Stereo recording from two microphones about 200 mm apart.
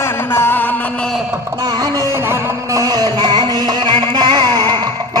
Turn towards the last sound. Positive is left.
turn(degrees=-20)  # may be behind; listen again after turning